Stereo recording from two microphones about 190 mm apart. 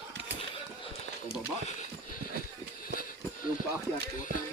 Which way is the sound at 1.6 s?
40° left (ahead or behind).